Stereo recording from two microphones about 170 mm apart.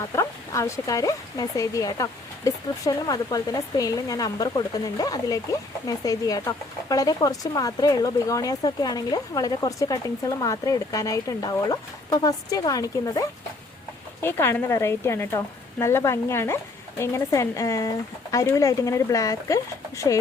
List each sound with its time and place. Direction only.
0.0 s speech: 15° left (ahead or behind)